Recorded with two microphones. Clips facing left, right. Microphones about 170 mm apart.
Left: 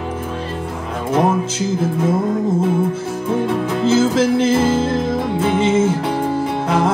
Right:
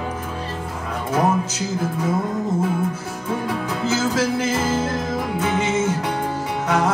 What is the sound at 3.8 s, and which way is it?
Music, 30° left (ahead or behind).